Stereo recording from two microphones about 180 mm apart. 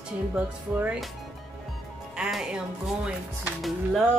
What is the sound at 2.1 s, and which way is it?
Speech, 5° right (ahead or behind).